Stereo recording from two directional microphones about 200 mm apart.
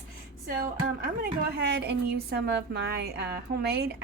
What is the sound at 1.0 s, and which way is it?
A woman's voice, 50° right (ahead or behind).